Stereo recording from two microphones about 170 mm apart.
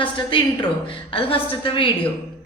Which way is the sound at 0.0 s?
30° left (ahead or behind).